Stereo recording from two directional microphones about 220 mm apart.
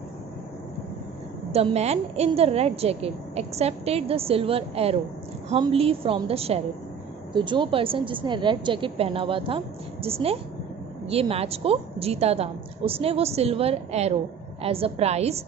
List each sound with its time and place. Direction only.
1.5 s a woman's voice: 30° right (ahead or behind)